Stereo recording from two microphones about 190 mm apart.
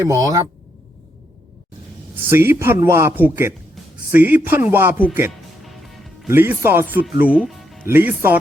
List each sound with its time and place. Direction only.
0.0 s a man's voice: 15° right (ahead or behind)
2.3 s a man's voice: 10° right (ahead or behind)
5.6 s music: centre (ahead or behind)
6.2 s a man's voice: 10° right (ahead or behind)
7.2 s music: 5° right (ahead or behind)
7.9 s a man's voice: 10° right (ahead or behind)